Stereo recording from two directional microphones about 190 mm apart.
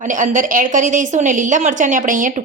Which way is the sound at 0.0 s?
40° right (ahead or behind).